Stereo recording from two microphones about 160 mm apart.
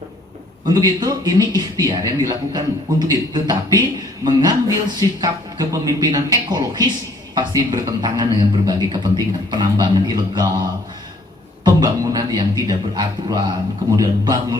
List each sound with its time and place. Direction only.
0.6 s a man's voice: 25° right (ahead or behind)